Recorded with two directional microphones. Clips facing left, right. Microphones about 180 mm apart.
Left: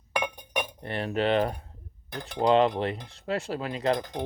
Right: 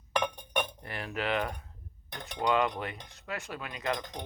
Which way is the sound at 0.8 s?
30° left (ahead or behind).